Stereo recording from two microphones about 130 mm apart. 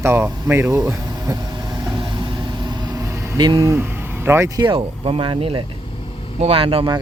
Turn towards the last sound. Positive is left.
turn(degrees=-45)  # may be behind; listen again after turning